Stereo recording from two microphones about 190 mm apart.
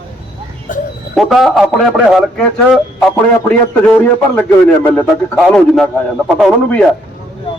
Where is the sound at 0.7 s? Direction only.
45° left (ahead or behind).